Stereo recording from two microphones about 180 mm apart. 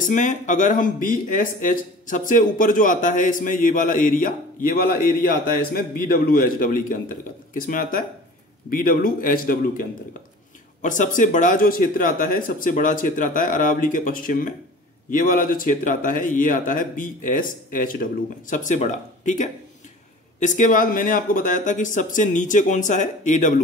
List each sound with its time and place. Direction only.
0.0 s speech: 45° left (ahead or behind)